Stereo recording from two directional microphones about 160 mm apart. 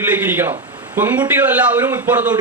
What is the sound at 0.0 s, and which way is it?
Speech, 10° right (ahead or behind).